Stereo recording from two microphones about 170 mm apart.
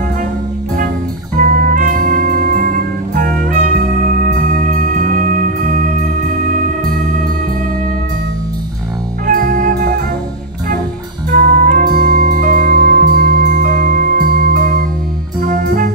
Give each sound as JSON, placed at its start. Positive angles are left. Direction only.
{"t": 1.3, "sound": "music", "side_deg": -55}
{"t": 9.2, "sound": "music", "side_deg": -55}
{"t": 11.2, "sound": "music", "side_deg": -55}